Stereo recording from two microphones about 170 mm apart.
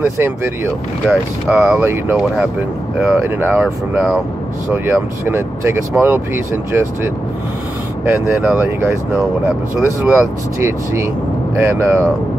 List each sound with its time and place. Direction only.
1.0 s speech: 5° right (ahead or behind)